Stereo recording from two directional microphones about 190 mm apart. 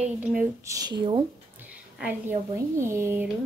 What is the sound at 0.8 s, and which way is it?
Speech, 25° right (ahead or behind).